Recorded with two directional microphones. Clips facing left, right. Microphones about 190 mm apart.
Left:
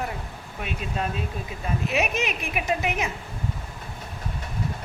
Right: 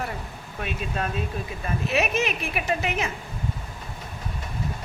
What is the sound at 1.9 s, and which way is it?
A woman's voice, 15° left (ahead or behind).